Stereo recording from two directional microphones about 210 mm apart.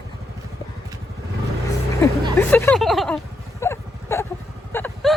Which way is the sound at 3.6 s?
10° left (ahead or behind).